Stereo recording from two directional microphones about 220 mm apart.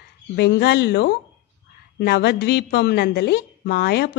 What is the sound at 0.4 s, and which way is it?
Speech, 50° left (ahead or behind).